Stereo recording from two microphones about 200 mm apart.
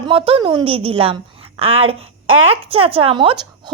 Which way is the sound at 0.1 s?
25° right (ahead or behind).